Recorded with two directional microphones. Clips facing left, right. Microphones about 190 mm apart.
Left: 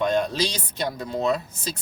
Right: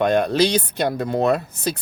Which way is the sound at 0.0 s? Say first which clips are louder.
Right 6 dB; 60° right (ahead or behind).